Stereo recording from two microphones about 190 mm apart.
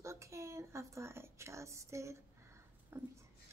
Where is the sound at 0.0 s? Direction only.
15° right (ahead or behind).